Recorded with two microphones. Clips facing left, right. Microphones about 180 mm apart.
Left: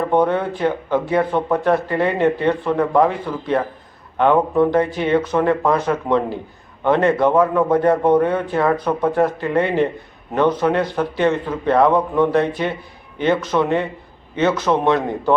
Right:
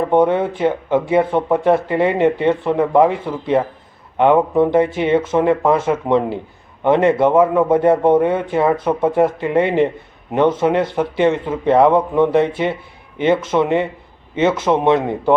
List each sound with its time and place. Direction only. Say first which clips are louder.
0.1 s speech: right 4 dB; 20° right (ahead or behind)